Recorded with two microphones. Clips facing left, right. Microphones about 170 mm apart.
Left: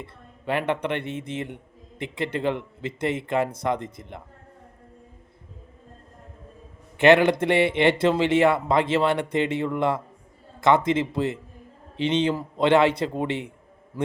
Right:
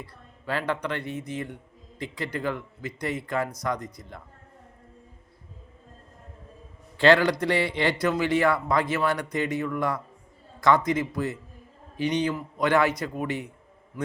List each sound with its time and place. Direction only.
0.0 s speech: 25° left (ahead or behind)
7.0 s speech: 20° left (ahead or behind)